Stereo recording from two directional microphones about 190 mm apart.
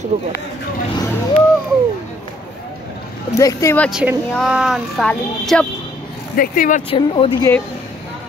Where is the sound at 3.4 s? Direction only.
15° left (ahead or behind).